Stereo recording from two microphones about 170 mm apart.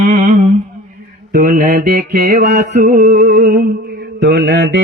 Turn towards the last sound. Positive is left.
turn(degrees=-75)  # may be behind; listen again after turning